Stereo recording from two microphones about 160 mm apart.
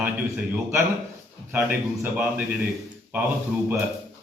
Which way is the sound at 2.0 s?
10° right (ahead or behind).